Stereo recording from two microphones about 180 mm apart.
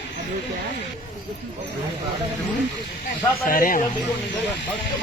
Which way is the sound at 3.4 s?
50° left (ahead or behind).